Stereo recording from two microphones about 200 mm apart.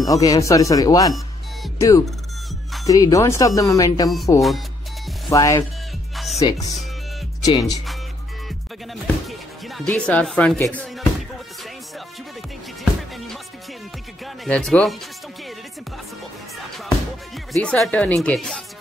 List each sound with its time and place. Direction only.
0.0 s speech: 15° left (ahead or behind)
8.5 s music: centre (ahead or behind)
14.2 s speech: centre (ahead or behind)
17.5 s speech: 5° left (ahead or behind)